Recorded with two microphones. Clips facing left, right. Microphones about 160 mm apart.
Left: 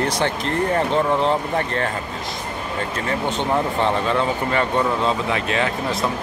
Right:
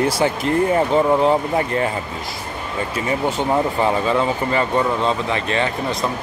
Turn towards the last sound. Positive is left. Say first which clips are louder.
# right 1 dB
turn(degrees=0)  # may be behind; listen again after turning